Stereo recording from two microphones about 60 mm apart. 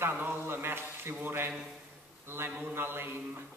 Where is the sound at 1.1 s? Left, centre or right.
Right.